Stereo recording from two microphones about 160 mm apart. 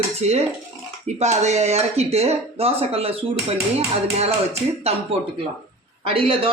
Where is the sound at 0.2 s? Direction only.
40° right (ahead or behind).